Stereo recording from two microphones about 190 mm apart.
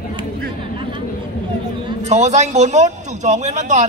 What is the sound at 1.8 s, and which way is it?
A man's voice, 35° right (ahead or behind).